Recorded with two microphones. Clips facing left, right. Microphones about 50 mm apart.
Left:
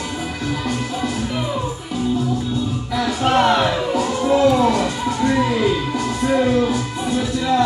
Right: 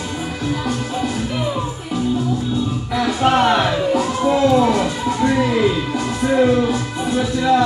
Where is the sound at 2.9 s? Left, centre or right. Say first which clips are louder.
Right 2 dB; centre.